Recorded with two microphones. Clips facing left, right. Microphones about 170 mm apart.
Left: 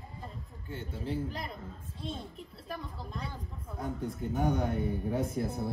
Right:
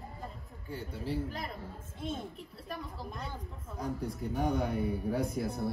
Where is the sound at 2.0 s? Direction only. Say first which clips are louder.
Right 2 dB; 50° right (ahead or behind).